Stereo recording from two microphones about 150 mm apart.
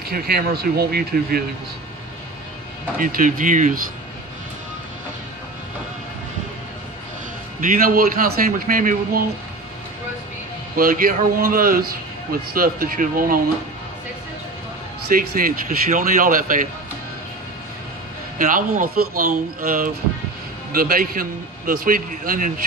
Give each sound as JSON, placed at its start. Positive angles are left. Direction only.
{"t": 0.1, "sound": "speech", "side_deg": -90}
{"t": 3.0, "sound": "speech", "side_deg": -65}
{"t": 7.6, "sound": "a man's voice", "side_deg": -65}
{"t": 10.8, "sound": "a man's voice", "side_deg": -70}
{"t": 15.0, "sound": "speech", "side_deg": -70}
{"t": 18.4, "sound": "a man's voice", "side_deg": -65}